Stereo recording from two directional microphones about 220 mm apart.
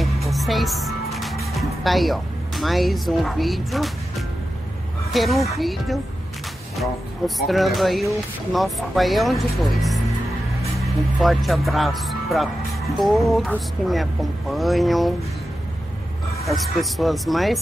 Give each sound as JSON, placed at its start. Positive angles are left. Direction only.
{"t": 0.0, "sound": "music", "side_deg": 0}
{"t": 1.5, "sound": "speech", "side_deg": 0}
{"t": 5.1, "sound": "speech", "side_deg": 0}
{"t": 16.4, "sound": "speech", "side_deg": 0}